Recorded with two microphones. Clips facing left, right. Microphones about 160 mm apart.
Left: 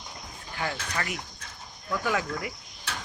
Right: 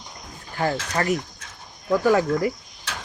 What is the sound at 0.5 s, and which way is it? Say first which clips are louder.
Speech: right 8 dB; 40° right (ahead or behind).